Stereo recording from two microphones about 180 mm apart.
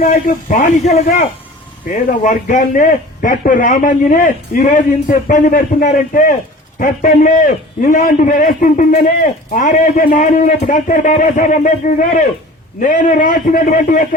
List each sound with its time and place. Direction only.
0.0 s a man's voice: 45° left (ahead or behind)